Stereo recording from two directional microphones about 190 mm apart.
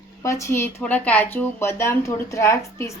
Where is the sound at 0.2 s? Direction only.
15° left (ahead or behind).